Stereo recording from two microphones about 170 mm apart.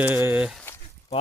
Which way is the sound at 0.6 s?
15° left (ahead or behind).